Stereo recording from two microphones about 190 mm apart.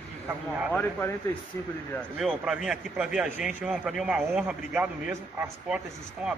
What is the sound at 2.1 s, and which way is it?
A man's voice, 5° right (ahead or behind).